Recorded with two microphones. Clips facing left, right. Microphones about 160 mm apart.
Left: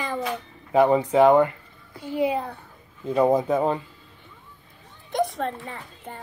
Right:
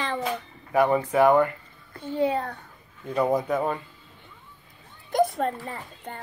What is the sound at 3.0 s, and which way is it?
Speech, 20° left (ahead or behind).